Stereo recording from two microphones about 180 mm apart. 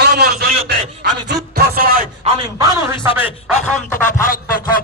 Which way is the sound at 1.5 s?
60° right (ahead or behind).